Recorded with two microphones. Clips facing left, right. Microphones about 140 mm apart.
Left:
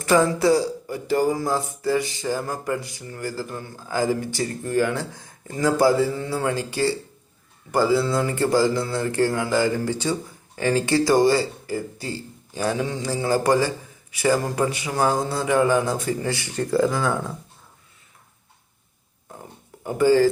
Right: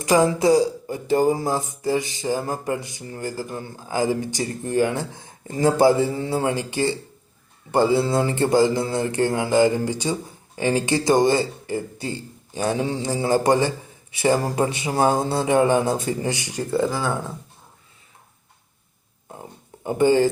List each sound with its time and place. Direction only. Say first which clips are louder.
0.0 s speech: right 1 dB; 15° right (ahead or behind)
16.7 s speech: left 1 dB; centre (ahead or behind)
19.8 s speech: even; 20° right (ahead or behind)